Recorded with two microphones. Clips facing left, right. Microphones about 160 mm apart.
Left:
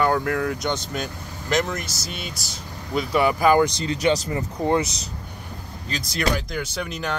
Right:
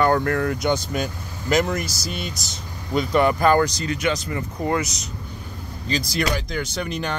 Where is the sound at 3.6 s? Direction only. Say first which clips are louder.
Left 2 dB; 25° left (ahead or behind).